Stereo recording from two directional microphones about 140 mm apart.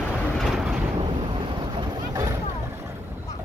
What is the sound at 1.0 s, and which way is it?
Boat, 35° right (ahead or behind).